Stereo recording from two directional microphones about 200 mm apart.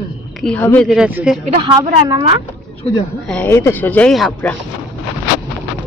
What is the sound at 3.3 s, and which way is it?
Speech, 10° left (ahead or behind).